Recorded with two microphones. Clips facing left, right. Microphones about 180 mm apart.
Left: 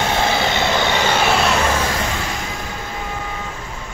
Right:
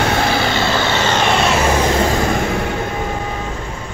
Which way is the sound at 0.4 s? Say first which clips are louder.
Right 1 dB; 20° left (ahead or behind).